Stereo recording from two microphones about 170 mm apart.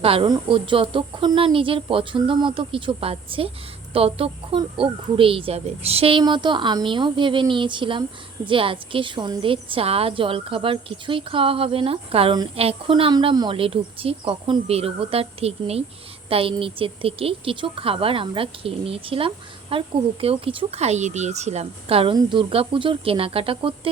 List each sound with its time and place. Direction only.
0.0 s a woman's voice: 35° right (ahead or behind)